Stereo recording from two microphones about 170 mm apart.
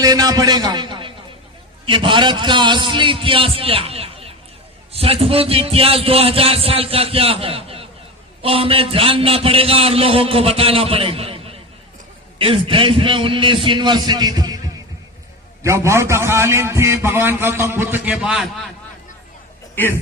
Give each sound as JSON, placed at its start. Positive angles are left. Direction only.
{"t": 0.0, "sound": "a man's voice", "side_deg": -20}
{"t": 19.7, "sound": "speech", "side_deg": 10}